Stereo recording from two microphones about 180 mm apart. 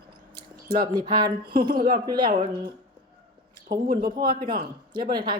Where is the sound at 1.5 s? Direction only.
55° right (ahead or behind).